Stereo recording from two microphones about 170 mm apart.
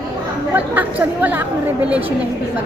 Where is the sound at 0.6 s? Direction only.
10° right (ahead or behind).